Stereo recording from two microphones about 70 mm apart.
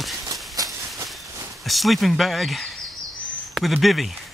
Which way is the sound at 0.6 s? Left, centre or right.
Right.